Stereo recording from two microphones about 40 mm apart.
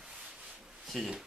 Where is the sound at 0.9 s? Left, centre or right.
Centre.